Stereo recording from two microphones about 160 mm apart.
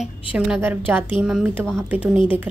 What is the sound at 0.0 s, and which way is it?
A woman's voice, 5° right (ahead or behind).